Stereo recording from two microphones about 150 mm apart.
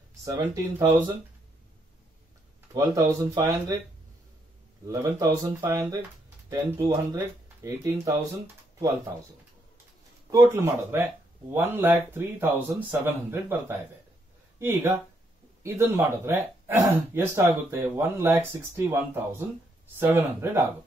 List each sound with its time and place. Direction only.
0.2 s speech: 20° right (ahead or behind)
2.7 s speech: 20° right (ahead or behind)
4.8 s speech: 25° right (ahead or behind)
10.3 s speech: 20° right (ahead or behind)
20.0 s speech: 10° right (ahead or behind)